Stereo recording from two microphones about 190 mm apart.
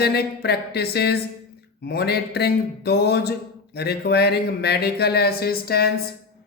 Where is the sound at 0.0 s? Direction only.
60° left (ahead or behind).